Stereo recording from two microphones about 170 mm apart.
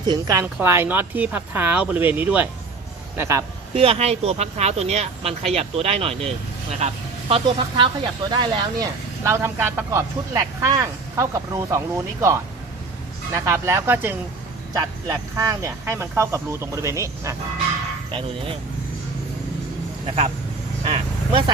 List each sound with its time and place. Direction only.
0.0 s speech: 25° right (ahead or behind)
3.8 s speech: 35° right (ahead or behind); by 14.2 s 10° right (ahead or behind)
14.7 s speech: 20° right (ahead or behind)
18.1 s speech: 30° right (ahead or behind)
20.1 s speech: 40° right (ahead or behind)
20.8 s a sound: 35° right (ahead or behind)